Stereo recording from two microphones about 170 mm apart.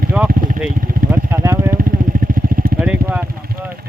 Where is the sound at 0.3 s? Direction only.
55° right (ahead or behind).